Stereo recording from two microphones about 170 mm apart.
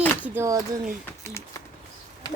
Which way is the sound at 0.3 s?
20° right (ahead or behind).